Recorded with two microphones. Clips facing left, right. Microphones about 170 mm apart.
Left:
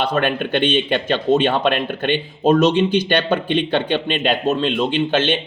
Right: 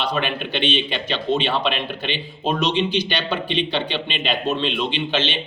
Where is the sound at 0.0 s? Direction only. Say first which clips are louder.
Left 5 dB; 50° left (ahead or behind).